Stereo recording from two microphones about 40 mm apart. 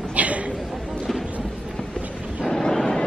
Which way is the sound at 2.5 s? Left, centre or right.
Centre.